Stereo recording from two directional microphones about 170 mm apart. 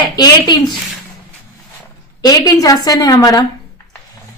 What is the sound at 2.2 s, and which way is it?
A woman's voice, 20° left (ahead or behind).